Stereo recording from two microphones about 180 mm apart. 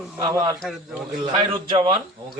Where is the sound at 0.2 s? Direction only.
20° right (ahead or behind).